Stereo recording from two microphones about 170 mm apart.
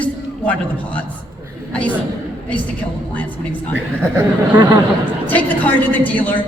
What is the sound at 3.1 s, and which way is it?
Speech, 10° left (ahead or behind).